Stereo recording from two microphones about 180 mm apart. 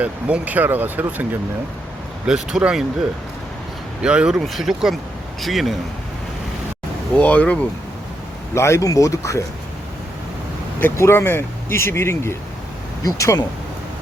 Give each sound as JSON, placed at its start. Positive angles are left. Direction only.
{"t": 0.0, "sound": "speech", "side_deg": -10}
{"t": 4.0, "sound": "speech", "side_deg": -5}
{"t": 7.2, "sound": "speech", "side_deg": 5}
{"t": 10.8, "sound": "speech", "side_deg": 15}